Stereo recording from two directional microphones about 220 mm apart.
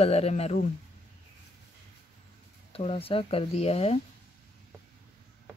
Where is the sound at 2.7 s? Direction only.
25° left (ahead or behind).